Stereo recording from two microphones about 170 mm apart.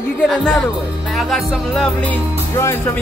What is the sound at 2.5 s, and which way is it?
Speech, 15° left (ahead or behind).